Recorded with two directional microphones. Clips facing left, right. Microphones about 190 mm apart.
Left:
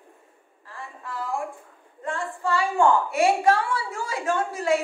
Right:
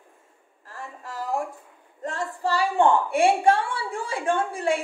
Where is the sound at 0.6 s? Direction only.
45° right (ahead or behind).